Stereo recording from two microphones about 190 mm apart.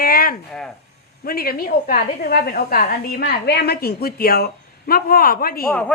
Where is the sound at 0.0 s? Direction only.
50° left (ahead or behind).